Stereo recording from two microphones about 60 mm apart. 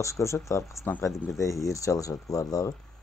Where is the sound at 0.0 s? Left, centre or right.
Left.